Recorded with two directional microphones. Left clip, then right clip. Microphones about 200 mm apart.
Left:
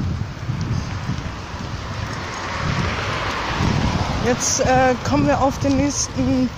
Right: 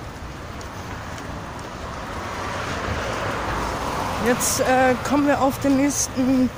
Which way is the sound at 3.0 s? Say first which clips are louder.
Left 2 dB; 45° left (ahead or behind).